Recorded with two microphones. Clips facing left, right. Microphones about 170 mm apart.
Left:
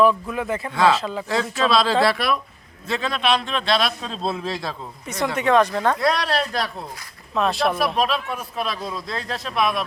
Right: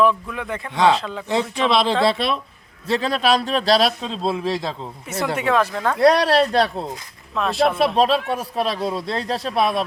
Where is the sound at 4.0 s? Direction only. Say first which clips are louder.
Right 3 dB; 15° right (ahead or behind).